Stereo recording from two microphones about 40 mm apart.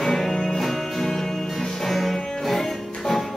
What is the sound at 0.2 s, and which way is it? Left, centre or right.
Music, centre.